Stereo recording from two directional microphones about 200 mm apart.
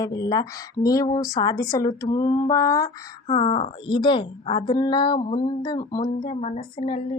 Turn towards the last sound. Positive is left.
turn(degrees=25)  # may be behind; listen again after turning